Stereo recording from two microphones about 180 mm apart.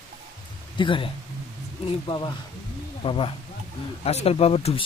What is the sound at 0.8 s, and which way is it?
Speech, 30° left (ahead or behind).